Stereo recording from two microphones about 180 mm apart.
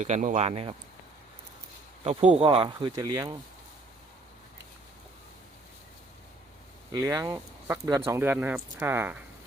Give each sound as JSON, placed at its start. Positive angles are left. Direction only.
{"t": 0.0, "sound": "speech", "side_deg": -45}
{"t": 2.0, "sound": "speech", "side_deg": -35}
{"t": 6.9, "sound": "speech", "side_deg": -15}